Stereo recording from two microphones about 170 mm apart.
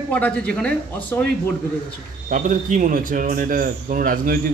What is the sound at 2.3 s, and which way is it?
A man's voice, 50° right (ahead or behind).